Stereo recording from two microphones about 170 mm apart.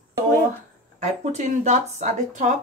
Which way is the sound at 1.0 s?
45° right (ahead or behind).